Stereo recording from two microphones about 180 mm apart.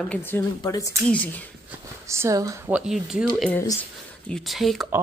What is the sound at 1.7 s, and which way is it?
Speech, 15° right (ahead or behind).